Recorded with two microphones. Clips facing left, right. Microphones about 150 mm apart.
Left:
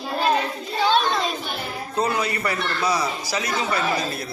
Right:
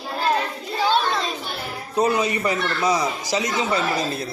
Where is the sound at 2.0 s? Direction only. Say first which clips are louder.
Right 3 dB; 20° right (ahead or behind).